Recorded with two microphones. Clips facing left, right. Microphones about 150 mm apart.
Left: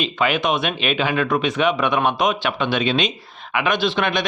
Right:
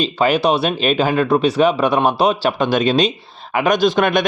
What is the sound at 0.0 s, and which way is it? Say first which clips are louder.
A man's voice: right 5 dB; 35° right (ahead or behind).